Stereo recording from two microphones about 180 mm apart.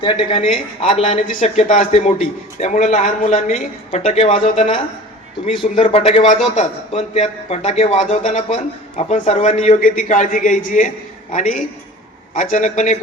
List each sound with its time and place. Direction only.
0.0 s a man's voice: 30° left (ahead or behind)